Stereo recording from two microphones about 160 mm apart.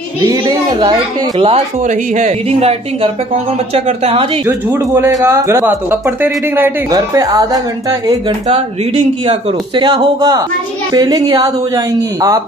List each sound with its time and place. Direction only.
0.3 s speech: 25° right (ahead or behind)
1.9 s speech: 50° right (ahead or behind)
4.5 s speech: 15° right (ahead or behind)
9.2 s speech: 35° right (ahead or behind)